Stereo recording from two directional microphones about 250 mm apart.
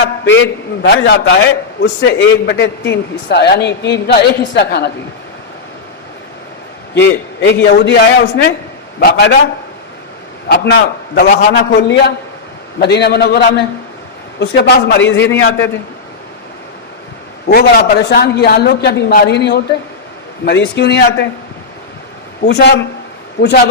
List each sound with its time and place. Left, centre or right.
0.3 s a man's voice: left
6.9 s a man's voice: left
10.5 s a woman's voice: left
17.5 s a woman's voice: left
22.4 s a man's voice: left